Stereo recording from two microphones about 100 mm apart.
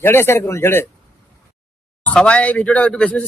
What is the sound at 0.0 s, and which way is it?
Speech, 25° left (ahead or behind).